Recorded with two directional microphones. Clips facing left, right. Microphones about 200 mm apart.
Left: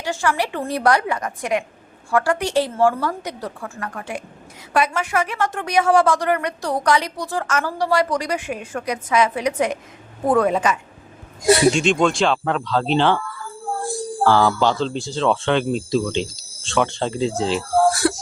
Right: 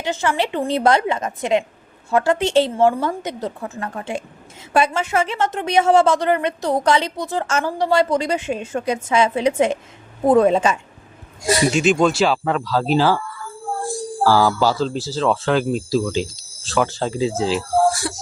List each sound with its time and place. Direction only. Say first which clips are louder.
0.0 s a woman's voice: right 1 dB; 20° right (ahead or behind)
11.7 s speech: right 2 dB; 5° right (ahead or behind)
14.3 s speech: right 1 dB; 5° right (ahead or behind)
18.0 s music: left 8 dB; 60° left (ahead or behind)